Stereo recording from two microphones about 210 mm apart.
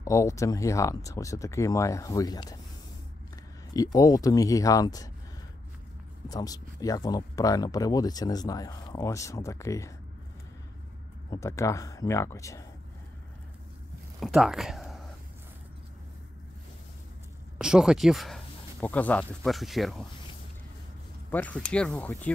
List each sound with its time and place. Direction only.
0.0 s speech: 15° left (ahead or behind)
3.7 s speech: 15° left (ahead or behind)
6.2 s speech: 15° left (ahead or behind)
11.2 s speech: 15° left (ahead or behind)
14.2 s speech: centre (ahead or behind)
17.6 s speech: 5° right (ahead or behind)
21.3 s speech: 5° left (ahead or behind)